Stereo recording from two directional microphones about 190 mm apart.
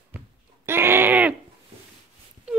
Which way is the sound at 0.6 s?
10° right (ahead or behind).